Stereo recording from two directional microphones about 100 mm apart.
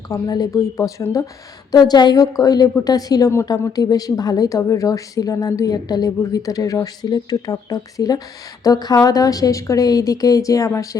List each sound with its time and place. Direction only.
0.1 s a woman's voice: 40° left (ahead or behind)